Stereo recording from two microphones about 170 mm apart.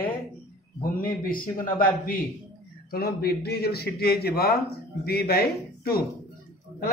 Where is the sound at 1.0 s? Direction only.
55° left (ahead or behind).